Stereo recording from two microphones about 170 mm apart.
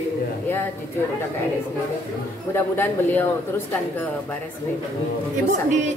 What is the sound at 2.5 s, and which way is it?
Speech, 10° left (ahead or behind).